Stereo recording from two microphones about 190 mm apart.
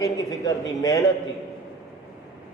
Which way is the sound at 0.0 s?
20° left (ahead or behind).